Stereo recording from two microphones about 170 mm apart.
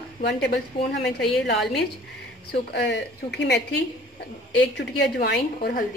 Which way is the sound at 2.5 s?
80° left.